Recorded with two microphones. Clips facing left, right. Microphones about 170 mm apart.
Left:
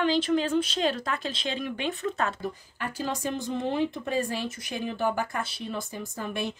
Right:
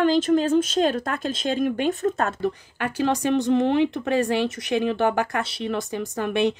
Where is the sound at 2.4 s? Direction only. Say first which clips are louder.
Right 8 dB; 75° right (ahead or behind).